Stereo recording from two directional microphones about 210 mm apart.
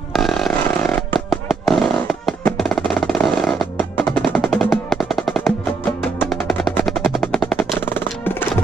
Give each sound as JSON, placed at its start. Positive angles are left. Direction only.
{"t": 0.1, "sound": "a sound", "side_deg": 0}
{"t": 1.3, "sound": "music", "side_deg": 0}
{"t": 6.3, "sound": "percussion", "side_deg": 0}